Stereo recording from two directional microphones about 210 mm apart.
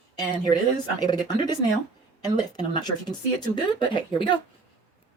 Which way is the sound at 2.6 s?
20° left (ahead or behind).